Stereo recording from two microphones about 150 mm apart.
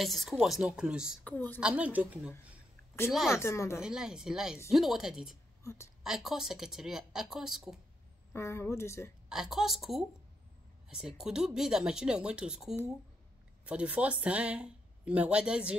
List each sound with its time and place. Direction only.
0.0 s speech: centre (ahead or behind)
1.2 s speech: 10° left (ahead or behind)
1.6 s speech: 10° right (ahead or behind)
3.3 s a woman's voice: 20° left (ahead or behind)
3.8 s speech: 5° right (ahead or behind)
5.6 s a woman's voice: 20° left (ahead or behind)
6.0 s speech: 5° right (ahead or behind)
8.3 s speech: 15° left (ahead or behind)
9.3 s speech: 5° right (ahead or behind)